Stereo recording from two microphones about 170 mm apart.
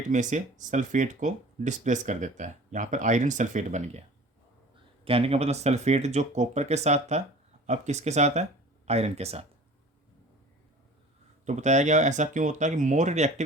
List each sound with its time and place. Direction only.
0.1 s speech: 45° right (ahead or behind)
5.0 s speech: 35° right (ahead or behind)
11.4 s speech: 45° right (ahead or behind)